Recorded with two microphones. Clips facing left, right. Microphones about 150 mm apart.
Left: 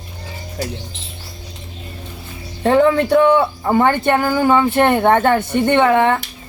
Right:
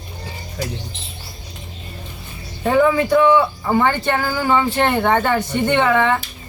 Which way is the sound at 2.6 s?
65° left (ahead or behind).